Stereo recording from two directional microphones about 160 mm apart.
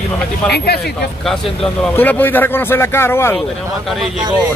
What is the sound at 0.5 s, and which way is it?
Speech, 90° left.